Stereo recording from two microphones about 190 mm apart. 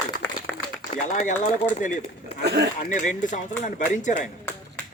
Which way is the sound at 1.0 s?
40° left (ahead or behind).